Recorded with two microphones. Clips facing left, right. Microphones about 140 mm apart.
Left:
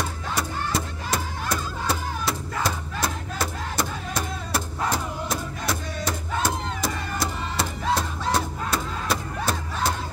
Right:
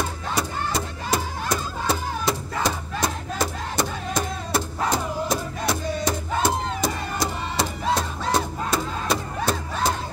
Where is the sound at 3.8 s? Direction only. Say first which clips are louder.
Right 3 dB; 5° left (ahead or behind).